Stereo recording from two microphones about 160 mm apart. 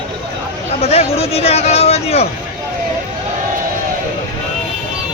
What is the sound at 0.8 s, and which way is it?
Speech, 40° left (ahead or behind).